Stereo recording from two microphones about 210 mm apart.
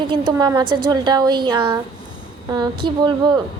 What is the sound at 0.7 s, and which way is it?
Speech, 90° right.